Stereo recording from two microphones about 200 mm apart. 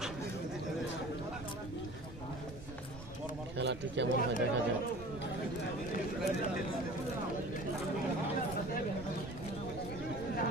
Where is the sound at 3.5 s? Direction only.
60° right (ahead or behind).